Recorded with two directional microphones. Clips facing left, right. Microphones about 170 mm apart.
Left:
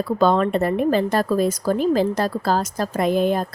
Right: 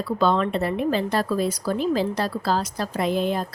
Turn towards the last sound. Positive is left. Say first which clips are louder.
# left 4 dB
turn(degrees=50)  # may be behind; listen again after turning